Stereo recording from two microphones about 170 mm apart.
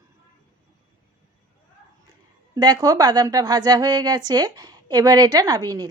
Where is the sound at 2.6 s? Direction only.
25° right (ahead or behind).